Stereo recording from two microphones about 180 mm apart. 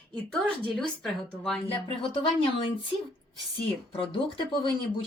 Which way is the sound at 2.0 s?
30° left (ahead or behind).